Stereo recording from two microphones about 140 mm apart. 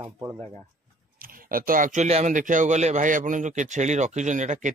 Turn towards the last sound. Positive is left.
turn(degrees=-60)  # may be behind; listen again after turning